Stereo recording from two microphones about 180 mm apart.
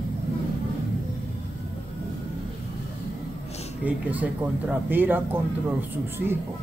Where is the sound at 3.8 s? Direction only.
10° right (ahead or behind).